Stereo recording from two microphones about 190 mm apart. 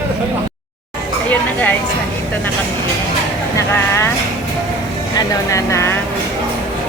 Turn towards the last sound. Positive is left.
turn(degrees=15)  # may be behind; listen again after turning